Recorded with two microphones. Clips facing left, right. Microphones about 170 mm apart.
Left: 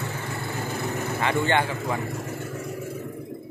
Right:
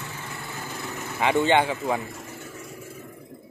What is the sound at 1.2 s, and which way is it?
Speech, 15° right (ahead or behind).